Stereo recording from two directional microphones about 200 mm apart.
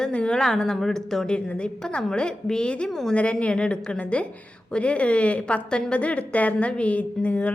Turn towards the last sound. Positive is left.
turn(degrees=5)  # may be behind; listen again after turning